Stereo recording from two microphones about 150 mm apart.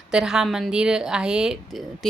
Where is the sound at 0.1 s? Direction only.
5° right (ahead or behind).